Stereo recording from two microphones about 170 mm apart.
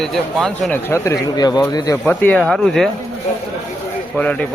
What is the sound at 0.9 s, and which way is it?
Speech, 15° left (ahead or behind).